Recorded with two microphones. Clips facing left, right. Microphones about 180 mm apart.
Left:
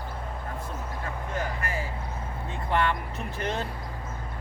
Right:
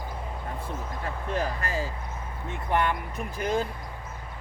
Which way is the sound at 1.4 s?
40° right (ahead or behind).